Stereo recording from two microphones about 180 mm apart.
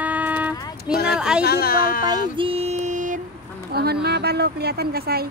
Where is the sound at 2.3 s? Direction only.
30° right (ahead or behind).